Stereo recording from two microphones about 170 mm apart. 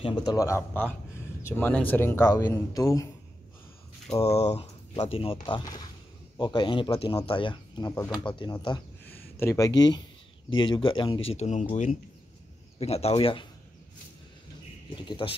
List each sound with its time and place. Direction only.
0.0 s speech: 25° left (ahead or behind)
4.2 s speech: 40° left (ahead or behind)
15.0 s speech: 30° left (ahead or behind)